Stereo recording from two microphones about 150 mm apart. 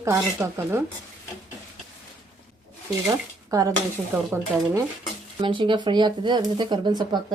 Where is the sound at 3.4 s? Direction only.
25° right (ahead or behind).